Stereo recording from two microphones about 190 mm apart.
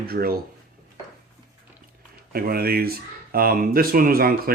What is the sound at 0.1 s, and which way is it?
Speech, 50° right (ahead or behind).